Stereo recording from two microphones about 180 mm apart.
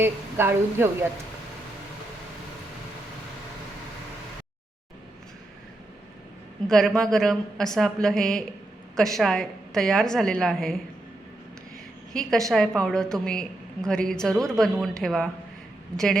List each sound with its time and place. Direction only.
0.0 s a woman's voice: 15° right (ahead or behind)
6.7 s a woman's voice: centre (ahead or behind)
12.1 s a woman's voice: 5° left (ahead or behind)